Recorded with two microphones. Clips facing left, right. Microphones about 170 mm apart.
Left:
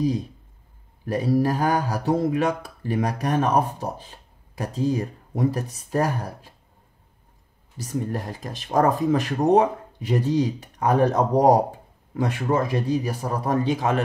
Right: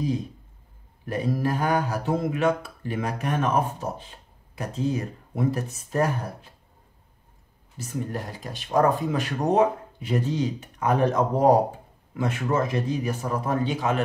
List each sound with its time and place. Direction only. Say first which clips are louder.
1.0 s speech: left 5 dB; 40° left (ahead or behind)
7.7 s speech: left 3 dB; 40° left (ahead or behind)